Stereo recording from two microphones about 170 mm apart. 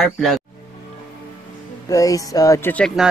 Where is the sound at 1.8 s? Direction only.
20° left (ahead or behind); by 3.0 s 5° left (ahead or behind).